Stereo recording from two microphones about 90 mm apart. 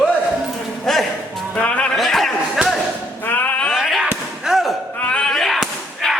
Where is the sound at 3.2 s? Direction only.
20° left (ahead or behind).